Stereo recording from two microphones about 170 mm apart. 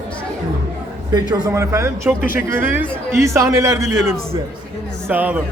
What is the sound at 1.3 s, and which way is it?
A man's voice, 15° right (ahead or behind).